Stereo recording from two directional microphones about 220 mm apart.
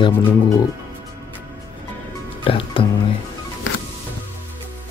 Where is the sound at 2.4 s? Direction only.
25° left (ahead or behind).